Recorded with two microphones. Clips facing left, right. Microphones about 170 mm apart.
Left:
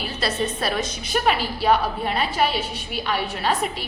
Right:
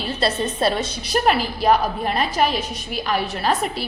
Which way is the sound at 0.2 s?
30° right (ahead or behind).